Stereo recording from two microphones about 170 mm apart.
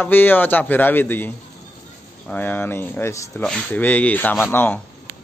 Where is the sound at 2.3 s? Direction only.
10° left (ahead or behind).